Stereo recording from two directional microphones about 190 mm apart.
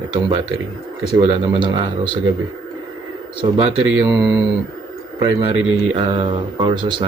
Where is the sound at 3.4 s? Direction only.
25° right (ahead or behind).